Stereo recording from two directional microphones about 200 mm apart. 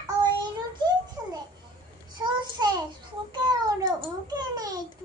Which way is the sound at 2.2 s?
20° right (ahead or behind).